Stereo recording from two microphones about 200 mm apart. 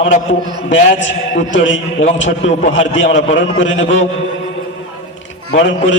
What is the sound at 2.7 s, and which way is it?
A man's voice, 70° left (ahead or behind).